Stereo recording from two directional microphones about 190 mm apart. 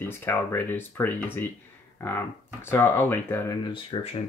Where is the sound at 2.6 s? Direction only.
10° left (ahead or behind).